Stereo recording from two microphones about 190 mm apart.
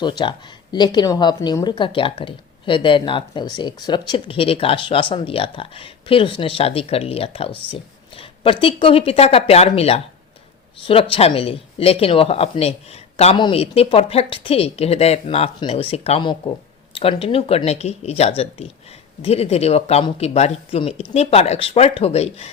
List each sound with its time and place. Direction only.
0.0 s speech: 25° left (ahead or behind)